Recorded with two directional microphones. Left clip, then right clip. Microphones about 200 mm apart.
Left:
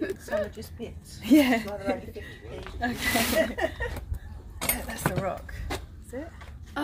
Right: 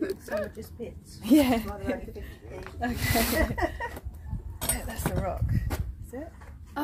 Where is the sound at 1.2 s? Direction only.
20° right (ahead or behind).